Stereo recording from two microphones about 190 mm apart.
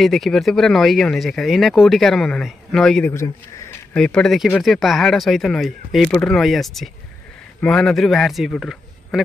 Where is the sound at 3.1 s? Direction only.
15° left (ahead or behind).